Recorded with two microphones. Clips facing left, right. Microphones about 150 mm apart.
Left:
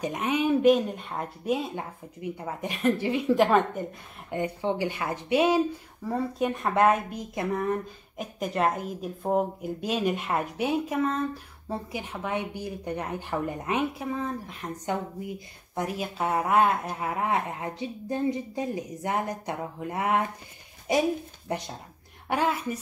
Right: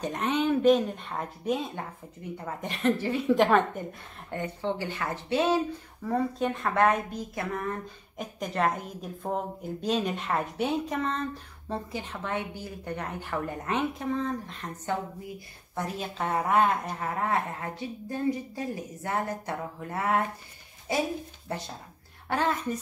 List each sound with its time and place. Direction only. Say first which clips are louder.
0.0 s a woman's voice: left 1 dB; 10° left (ahead or behind)
4.3 s a woman's voice: left 3 dB; 15° left (ahead or behind)
8.2 s a woman's voice: left 2 dB; 5° left (ahead or behind)